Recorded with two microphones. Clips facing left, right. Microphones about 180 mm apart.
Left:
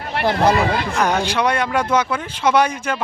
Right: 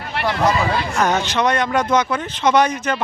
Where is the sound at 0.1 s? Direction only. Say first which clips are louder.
Left 2 dB; 45° left (ahead or behind).